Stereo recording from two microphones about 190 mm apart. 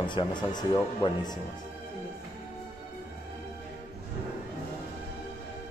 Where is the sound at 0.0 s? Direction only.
25° left (ahead or behind).